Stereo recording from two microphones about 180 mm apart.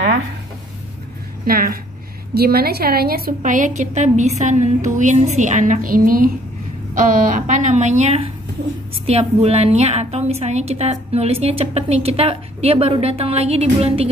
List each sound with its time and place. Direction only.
1.4 s a woman's voice: 55° right (ahead or behind); by 14.0 s 35° right (ahead or behind)